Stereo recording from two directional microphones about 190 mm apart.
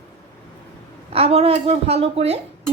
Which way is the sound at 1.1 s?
30° right (ahead or behind).